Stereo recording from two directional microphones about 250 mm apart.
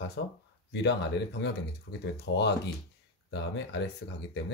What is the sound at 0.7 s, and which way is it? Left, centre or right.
Speech, left.